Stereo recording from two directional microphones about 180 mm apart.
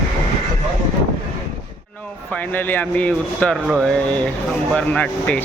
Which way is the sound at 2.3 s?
10° left (ahead or behind).